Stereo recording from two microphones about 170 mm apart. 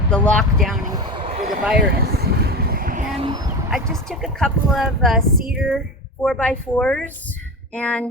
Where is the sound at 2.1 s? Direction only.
70° right (ahead or behind).